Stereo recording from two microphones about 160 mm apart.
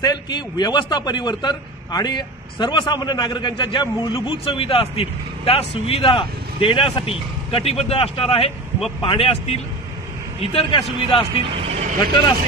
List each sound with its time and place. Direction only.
0.0 s a man's voice: 25° left (ahead or behind)
11.5 s speech: 45° right (ahead or behind)